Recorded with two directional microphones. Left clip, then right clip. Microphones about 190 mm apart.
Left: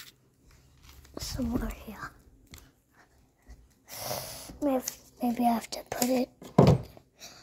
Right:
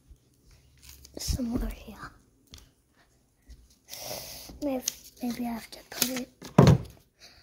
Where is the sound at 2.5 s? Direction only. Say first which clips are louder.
Right 1 dB; 30° left (ahead or behind).